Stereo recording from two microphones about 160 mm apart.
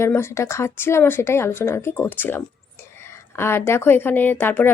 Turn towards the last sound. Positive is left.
turn(degrees=10)  # may be behind; listen again after turning